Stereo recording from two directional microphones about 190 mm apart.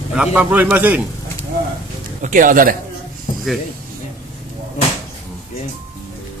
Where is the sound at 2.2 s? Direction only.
45° right (ahead or behind).